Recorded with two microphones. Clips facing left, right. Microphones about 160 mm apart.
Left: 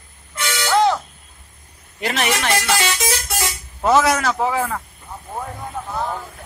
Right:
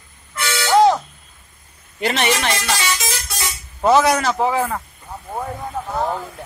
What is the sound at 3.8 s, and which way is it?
A man's voice, centre (ahead or behind).